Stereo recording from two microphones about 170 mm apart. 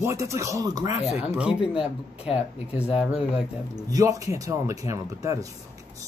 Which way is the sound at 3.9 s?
20° right (ahead or behind).